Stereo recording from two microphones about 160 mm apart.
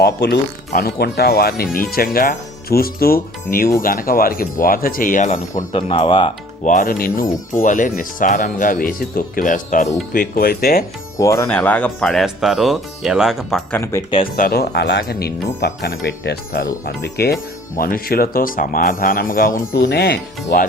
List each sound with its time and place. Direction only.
0.0 s speech: 80° left; by 5.6 s 50° left (ahead or behind)
5.7 s speech: 35° left (ahead or behind)
6.7 s speech: 55° left (ahead or behind)
10.1 s speech: 65° left (ahead or behind)
11.2 s speech: 20° left (ahead or behind)
11.4 s speech: 10° left (ahead or behind)
13.7 s speech: 15° left (ahead or behind)
14.3 s speech: 70° left (ahead or behind)
16.8 s speech: 90° left
17.7 s speech: 65° left (ahead or behind)
19.7 s speech: 85° left